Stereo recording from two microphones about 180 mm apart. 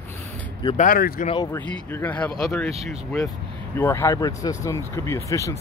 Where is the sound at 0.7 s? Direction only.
50° left (ahead or behind).